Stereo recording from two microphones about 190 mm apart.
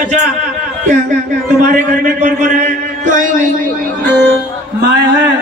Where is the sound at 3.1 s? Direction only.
45° right (ahead or behind).